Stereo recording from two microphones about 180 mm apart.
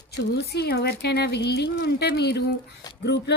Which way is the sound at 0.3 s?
65° left (ahead or behind).